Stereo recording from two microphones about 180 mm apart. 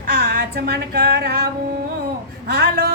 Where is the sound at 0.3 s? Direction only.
55° right (ahead or behind).